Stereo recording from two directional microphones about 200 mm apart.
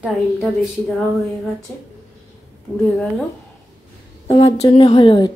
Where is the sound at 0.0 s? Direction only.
Centre (ahead or behind).